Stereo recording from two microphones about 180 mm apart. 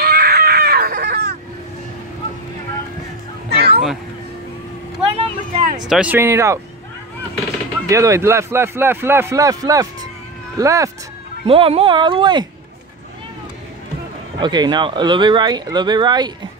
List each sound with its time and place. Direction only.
0.0 s baby cry: 60° right (ahead or behind)
3.4 s a sound: 60° right (ahead or behind)
5.0 s vehicle: 30° right (ahead or behind)
5.9 s a man's voice: 5° right (ahead or behind)
7.9 s a man's voice: 15° right (ahead or behind)
11.4 s speech: 30° right (ahead or behind)
14.4 s speech: 25° right (ahead or behind)